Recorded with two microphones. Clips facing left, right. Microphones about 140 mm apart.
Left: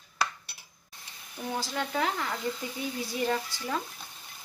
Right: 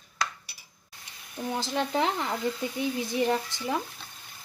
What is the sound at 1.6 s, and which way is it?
Speech, 25° right (ahead or behind).